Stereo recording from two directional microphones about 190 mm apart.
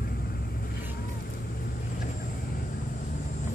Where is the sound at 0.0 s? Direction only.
55° left (ahead or behind).